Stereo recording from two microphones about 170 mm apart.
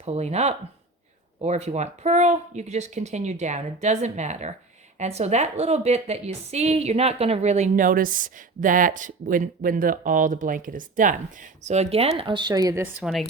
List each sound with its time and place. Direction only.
0.0 s a woman's voice: 40° right (ahead or behind)
11.6 s speech: 40° right (ahead or behind); by 13.2 s 5° right (ahead or behind)